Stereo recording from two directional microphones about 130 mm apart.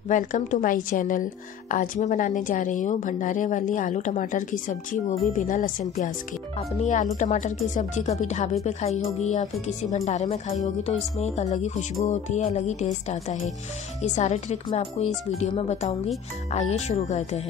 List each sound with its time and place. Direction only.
0.1 s a woman's voice: 85° left
6.8 s speech: 65° left (ahead or behind)